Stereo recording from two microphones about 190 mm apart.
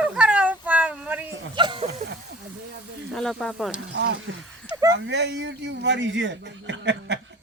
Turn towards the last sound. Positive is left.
turn(degrees=-70)  # may be behind; listen again after turning